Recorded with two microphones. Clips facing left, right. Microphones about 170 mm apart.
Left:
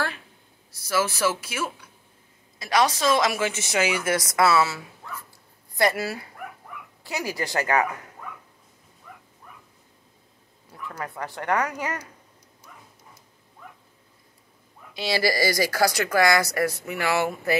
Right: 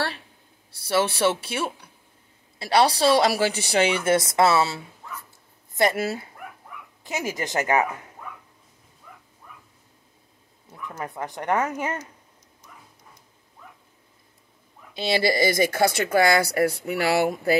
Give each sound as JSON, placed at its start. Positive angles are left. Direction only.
{"t": 0.7, "sound": "a woman's voice", "side_deg": -30}
{"t": 10.8, "sound": "speech", "side_deg": -20}
{"t": 15.0, "sound": "speech", "side_deg": -25}